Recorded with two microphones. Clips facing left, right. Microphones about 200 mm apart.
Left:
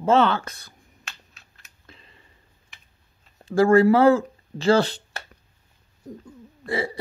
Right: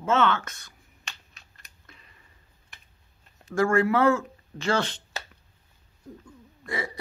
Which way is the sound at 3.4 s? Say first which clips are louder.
Left 7 dB; 30° left (ahead or behind).